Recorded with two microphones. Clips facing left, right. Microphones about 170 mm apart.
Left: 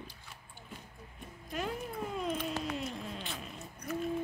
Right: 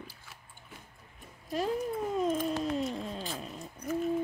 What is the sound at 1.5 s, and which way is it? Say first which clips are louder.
Cat: right 7 dB; 35° right (ahead or behind).